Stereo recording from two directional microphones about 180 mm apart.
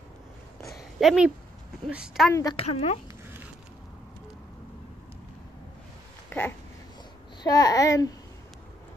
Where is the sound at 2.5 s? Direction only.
35° left (ahead or behind).